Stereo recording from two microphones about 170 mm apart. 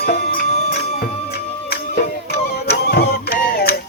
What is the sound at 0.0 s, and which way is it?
Music, 60° left (ahead or behind).